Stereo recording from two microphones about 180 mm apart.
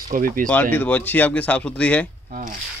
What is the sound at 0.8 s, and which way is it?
Speech, 10° left (ahead or behind).